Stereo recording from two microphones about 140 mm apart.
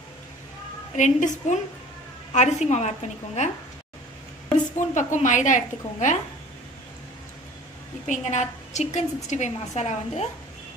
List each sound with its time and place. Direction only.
0.9 s a woman's voice: 60° left (ahead or behind)
4.7 s a woman's voice: 60° left (ahead or behind)
8.1 s a woman's voice: 55° left (ahead or behind)